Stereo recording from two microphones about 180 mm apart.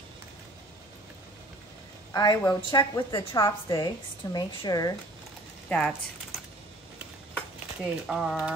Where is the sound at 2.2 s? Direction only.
25° left (ahead or behind).